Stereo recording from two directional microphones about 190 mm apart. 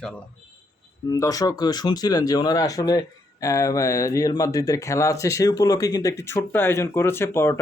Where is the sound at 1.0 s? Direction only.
20° left (ahead or behind).